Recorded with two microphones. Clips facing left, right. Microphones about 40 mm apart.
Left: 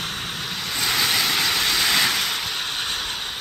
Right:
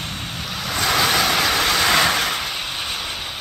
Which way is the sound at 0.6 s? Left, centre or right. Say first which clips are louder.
Right 5 dB; centre.